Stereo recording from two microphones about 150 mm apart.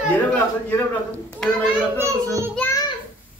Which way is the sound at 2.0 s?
20° right (ahead or behind).